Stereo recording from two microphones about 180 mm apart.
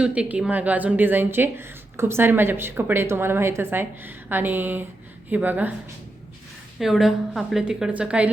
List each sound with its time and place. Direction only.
0.0 s a woman's voice: 5° right (ahead or behind)
6.7 s a woman's voice: centre (ahead or behind)